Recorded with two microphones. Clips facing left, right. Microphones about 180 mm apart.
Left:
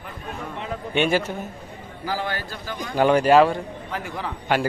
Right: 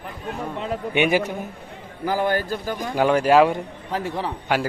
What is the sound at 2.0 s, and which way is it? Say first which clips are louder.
Speech: right 6 dB; 50° right (ahead or behind).